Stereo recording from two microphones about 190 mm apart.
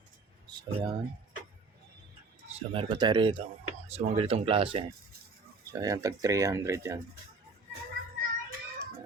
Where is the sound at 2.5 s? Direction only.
25° right (ahead or behind).